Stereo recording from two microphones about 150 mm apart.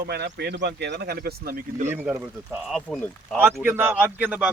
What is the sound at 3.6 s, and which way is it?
Speech, 15° right (ahead or behind).